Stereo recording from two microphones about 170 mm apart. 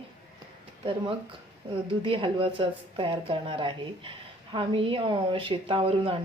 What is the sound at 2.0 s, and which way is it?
A woman's voice, 30° right (ahead or behind).